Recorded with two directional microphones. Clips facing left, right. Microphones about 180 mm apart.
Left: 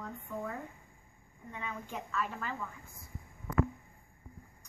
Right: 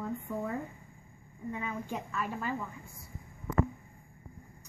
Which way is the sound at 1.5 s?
10° right (ahead or behind).